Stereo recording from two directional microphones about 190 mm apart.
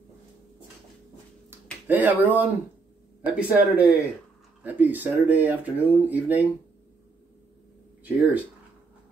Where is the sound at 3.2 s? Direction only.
5° right (ahead or behind).